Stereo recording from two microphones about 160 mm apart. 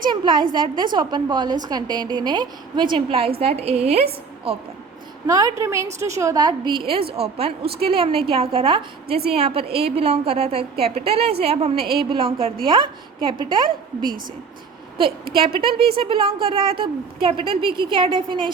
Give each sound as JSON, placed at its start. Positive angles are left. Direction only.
{"t": 0.1, "sound": "a woman's voice", "side_deg": -30}
{"t": 5.2, "sound": "a woman's voice", "side_deg": -20}
{"t": 15.4, "sound": "a woman's voice", "side_deg": -35}